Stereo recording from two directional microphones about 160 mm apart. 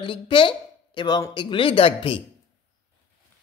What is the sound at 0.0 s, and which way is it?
Speech, 30° left (ahead or behind).